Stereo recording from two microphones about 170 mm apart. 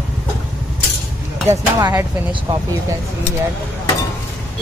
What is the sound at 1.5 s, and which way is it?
Speech, 15° right (ahead or behind).